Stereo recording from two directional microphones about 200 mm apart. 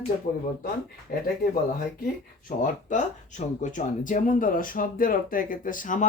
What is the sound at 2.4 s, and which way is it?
Speech, 40° left (ahead or behind).